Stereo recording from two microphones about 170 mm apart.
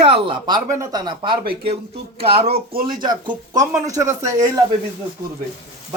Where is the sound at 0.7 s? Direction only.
20° right (ahead or behind).